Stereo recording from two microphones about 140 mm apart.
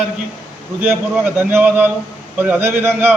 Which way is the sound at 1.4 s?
15° right (ahead or behind).